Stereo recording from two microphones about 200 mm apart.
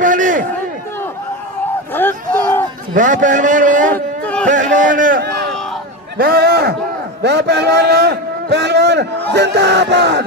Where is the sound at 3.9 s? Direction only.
5° left (ahead or behind).